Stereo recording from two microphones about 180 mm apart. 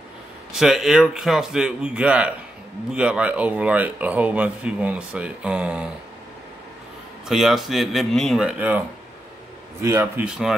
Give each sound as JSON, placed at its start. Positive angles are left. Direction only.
{"t": 0.5, "sound": "a man's voice", "side_deg": 0}
{"t": 7.2, "sound": "a man's voice", "side_deg": 0}
{"t": 10.2, "sound": "a man's voice", "side_deg": -5}